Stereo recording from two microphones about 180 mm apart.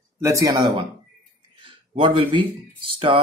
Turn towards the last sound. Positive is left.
turn(degrees=-30)  # may be behind; listen again after turning